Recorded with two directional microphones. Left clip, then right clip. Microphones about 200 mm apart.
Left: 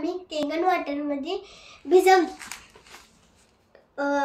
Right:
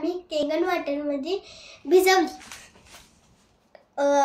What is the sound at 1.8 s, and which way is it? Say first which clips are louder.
Speech: left 1 dB; 35° right (ahead or behind).